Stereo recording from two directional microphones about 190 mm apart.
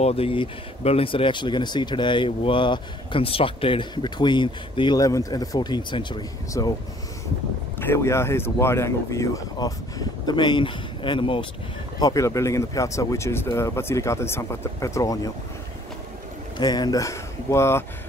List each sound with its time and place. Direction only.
0.0 s speech: 30° left (ahead or behind)
7.8 s speech: 15° left (ahead or behind)
16.5 s speech: 20° left (ahead or behind)